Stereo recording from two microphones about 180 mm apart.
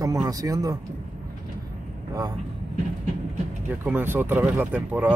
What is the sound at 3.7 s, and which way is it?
Speech, 10° right (ahead or behind).